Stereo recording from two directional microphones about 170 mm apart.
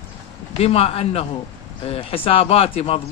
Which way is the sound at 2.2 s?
35° left (ahead or behind).